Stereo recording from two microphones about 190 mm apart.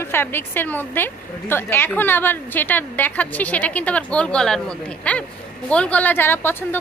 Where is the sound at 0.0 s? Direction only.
10° left (ahead or behind).